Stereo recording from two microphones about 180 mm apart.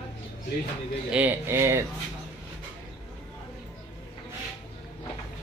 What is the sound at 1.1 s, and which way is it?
Speech, 10° right (ahead or behind).